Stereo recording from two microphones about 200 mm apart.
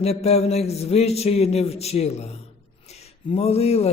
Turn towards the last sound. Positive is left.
turn(degrees=30)  # may be behind; listen again after turning